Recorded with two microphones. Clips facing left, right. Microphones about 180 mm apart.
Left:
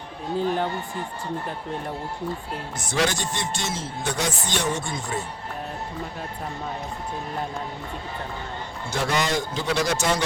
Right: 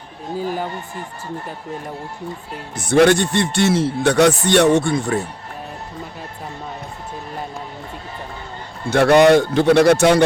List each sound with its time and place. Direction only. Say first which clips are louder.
0.3 s speech: even; 5° right (ahead or behind)
2.7 s a man's voice: right 13 dB; 60° right (ahead or behind)
8.9 s a man's voice: right 14 dB; 65° right (ahead or behind)